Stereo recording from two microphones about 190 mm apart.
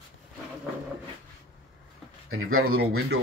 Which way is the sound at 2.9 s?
60° right (ahead or behind).